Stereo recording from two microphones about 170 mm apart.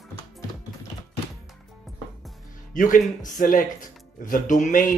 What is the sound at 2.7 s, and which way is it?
Speech, 50° left (ahead or behind).